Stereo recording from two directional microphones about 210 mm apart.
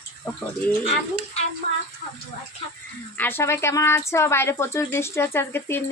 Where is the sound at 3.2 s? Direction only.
10° left (ahead or behind).